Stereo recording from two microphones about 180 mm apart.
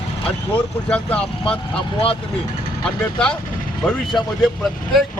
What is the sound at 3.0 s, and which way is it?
Speech, 5° left (ahead or behind).